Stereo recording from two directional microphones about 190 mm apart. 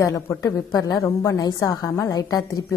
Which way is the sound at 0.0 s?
15° left (ahead or behind).